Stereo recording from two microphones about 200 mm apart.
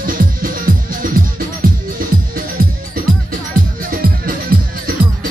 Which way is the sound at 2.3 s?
45° right (ahead or behind).